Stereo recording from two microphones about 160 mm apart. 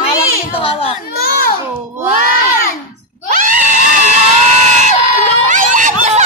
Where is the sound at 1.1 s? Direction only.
70° left (ahead or behind).